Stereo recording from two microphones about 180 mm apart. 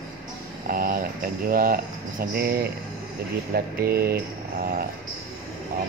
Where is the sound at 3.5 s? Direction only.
60° right (ahead or behind).